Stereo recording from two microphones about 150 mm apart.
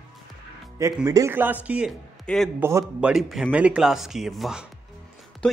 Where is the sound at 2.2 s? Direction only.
5° left (ahead or behind).